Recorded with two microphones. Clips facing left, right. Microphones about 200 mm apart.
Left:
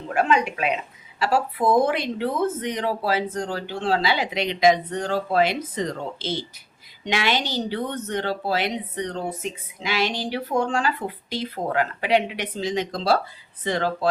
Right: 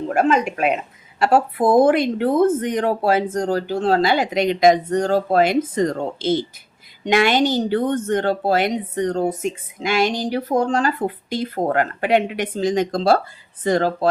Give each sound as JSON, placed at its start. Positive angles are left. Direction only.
{"t": 0.1, "sound": "a woman's voice", "side_deg": -45}